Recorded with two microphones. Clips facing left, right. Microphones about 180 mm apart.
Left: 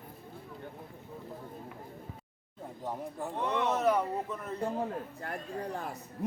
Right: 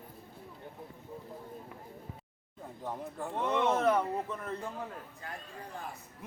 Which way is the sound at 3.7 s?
5° left (ahead or behind).